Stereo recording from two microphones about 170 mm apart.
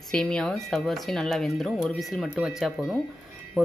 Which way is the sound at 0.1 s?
5° left (ahead or behind).